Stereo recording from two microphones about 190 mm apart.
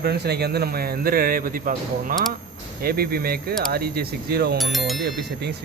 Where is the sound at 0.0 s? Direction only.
60° right (ahead or behind).